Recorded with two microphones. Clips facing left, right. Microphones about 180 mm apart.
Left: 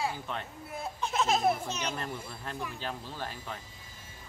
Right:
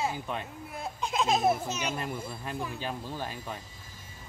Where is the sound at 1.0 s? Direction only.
15° right (ahead or behind).